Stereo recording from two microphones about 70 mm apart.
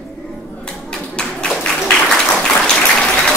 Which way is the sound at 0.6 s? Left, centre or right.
Centre.